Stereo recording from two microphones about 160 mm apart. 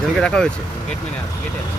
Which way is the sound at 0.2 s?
5° left (ahead or behind).